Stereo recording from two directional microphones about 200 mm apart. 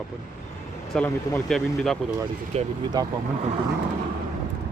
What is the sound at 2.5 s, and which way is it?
Speech, 30° right (ahead or behind).